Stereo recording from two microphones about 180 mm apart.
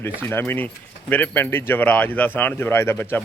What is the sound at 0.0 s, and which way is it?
A man's voice, 10° left (ahead or behind).